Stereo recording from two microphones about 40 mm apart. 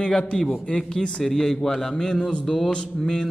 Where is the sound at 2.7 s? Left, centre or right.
Centre.